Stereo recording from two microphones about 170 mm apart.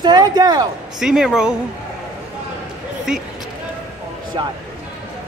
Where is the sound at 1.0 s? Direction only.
5° right (ahead or behind).